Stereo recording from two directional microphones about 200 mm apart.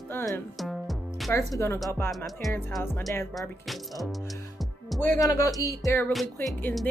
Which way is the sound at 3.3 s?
Centre (ahead or behind).